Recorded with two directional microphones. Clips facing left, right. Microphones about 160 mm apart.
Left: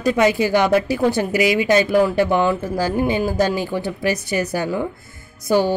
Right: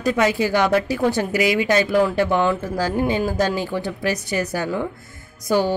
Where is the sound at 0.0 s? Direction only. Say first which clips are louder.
Left 2 dB; 15° left (ahead or behind).